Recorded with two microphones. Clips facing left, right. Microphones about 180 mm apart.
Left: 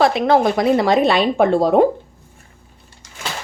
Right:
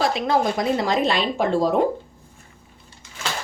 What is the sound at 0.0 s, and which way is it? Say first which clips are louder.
A woman's voice: left 6 dB; 60° left (ahead or behind).